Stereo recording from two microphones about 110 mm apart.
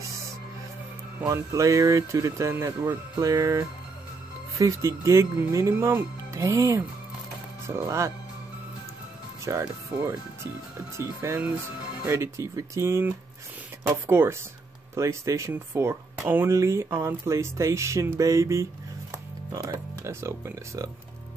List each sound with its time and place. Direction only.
1.2 s speech: 30° right (ahead or behind)
9.4 s speech: 30° right (ahead or behind)